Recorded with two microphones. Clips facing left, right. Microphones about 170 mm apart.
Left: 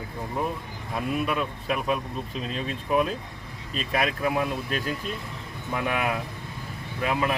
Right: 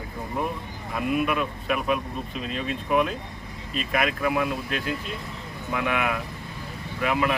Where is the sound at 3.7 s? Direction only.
35° left (ahead or behind).